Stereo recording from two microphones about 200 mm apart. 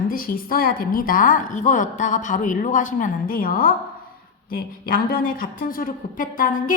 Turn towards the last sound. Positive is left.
turn(degrees=40)  # may be behind; listen again after turning